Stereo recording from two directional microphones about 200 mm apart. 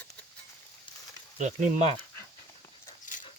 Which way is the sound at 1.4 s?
35° right (ahead or behind).